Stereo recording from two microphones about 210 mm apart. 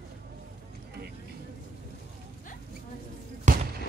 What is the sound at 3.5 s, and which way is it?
Basketball bounce, 35° right (ahead or behind).